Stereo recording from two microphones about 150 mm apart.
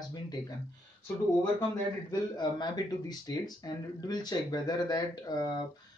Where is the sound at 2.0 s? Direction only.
30° left (ahead or behind).